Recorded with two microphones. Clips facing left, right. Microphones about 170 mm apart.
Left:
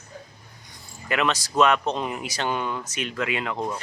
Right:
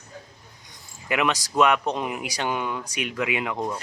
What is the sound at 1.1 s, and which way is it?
Speech, 15° right (ahead or behind).